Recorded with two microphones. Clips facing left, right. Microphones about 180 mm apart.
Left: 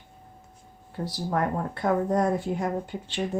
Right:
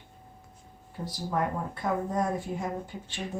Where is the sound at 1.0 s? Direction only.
75° left (ahead or behind).